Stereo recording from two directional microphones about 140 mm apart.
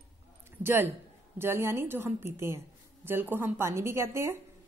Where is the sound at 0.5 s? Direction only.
15° right (ahead or behind).